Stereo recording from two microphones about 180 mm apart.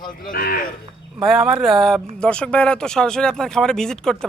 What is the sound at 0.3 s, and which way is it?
Speech, 55° left (ahead or behind).